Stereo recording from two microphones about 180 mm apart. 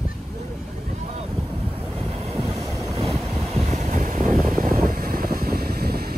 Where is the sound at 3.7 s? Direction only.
40° right (ahead or behind); by 6.1 s 60° right (ahead or behind).